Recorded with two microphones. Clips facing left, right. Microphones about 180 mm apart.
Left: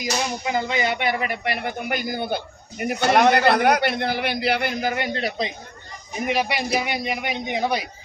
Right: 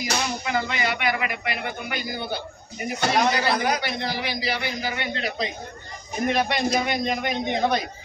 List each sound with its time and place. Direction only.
0.0 s speech: 20° left (ahead or behind); by 5.1 s 50° left (ahead or behind)
6.2 s a man's voice: 10° left (ahead or behind)